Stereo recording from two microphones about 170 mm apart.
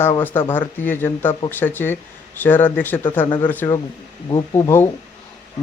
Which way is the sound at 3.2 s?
25° left (ahead or behind).